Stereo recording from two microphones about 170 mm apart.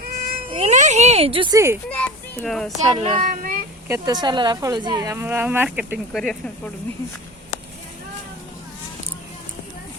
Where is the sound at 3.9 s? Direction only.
25° right (ahead or behind).